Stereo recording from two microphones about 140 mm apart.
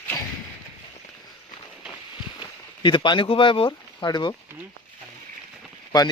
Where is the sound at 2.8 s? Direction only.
35° left (ahead or behind).